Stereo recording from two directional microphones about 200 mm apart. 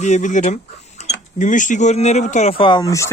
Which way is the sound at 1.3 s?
40° left (ahead or behind).